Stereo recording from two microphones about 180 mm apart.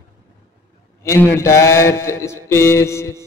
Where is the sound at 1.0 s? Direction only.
15° left (ahead or behind).